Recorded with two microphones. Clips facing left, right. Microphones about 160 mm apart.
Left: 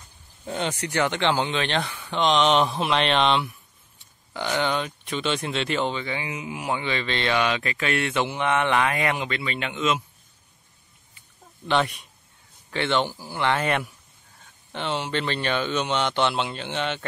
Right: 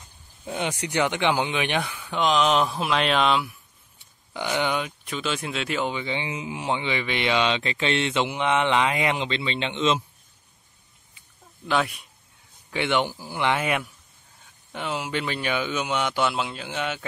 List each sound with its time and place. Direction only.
0.5 s speech: 10° right (ahead or behind)
4.3 s speech: 15° right (ahead or behind)
6.0 s speech: 25° right (ahead or behind)
11.6 s speech: 5° right (ahead or behind)
12.7 s speech: 15° right (ahead or behind)